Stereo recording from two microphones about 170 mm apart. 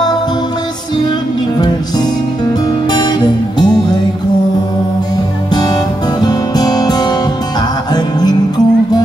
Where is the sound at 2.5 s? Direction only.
25° left (ahead or behind).